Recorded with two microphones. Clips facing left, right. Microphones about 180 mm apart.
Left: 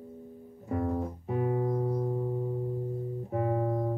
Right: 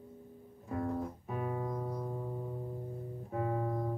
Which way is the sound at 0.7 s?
40° left (ahead or behind).